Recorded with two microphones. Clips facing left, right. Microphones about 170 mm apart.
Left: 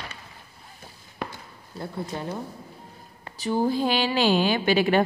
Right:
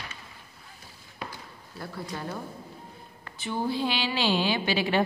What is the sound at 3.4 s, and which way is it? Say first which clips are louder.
A woman's voice: left 5 dB; 40° left (ahead or behind).